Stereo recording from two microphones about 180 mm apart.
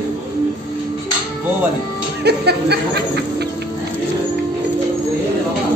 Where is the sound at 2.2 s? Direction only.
65° right (ahead or behind).